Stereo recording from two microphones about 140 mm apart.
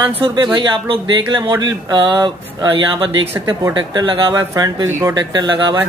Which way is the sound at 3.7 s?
35° right (ahead or behind).